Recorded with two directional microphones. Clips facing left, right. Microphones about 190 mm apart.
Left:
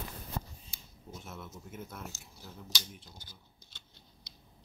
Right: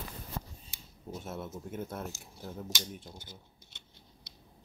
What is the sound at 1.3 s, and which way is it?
Speech, 30° right (ahead or behind).